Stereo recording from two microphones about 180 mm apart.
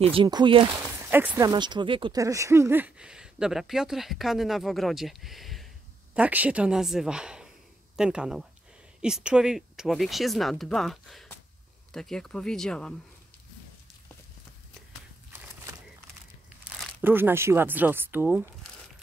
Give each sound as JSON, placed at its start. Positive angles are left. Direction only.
{"t": 0.1, "sound": "speech", "side_deg": -25}
{"t": 0.7, "sound": "speech", "side_deg": -10}
{"t": 1.5, "sound": "speech", "side_deg": -25}
{"t": 15.3, "sound": "a sound", "side_deg": -10}
{"t": 16.4, "sound": "speech", "side_deg": -5}